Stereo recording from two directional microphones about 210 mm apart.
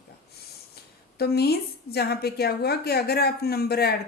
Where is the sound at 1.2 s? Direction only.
50° left (ahead or behind).